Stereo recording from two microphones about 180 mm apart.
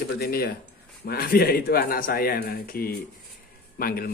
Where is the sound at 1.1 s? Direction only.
60° left (ahead or behind).